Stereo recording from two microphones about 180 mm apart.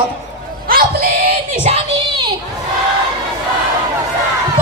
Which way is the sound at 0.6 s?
55° right (ahead or behind).